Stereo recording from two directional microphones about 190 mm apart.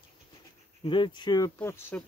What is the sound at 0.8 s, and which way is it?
Speech, 25° left (ahead or behind).